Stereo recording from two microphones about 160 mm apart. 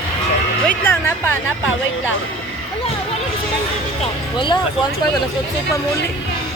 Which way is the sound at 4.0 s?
30° left (ahead or behind).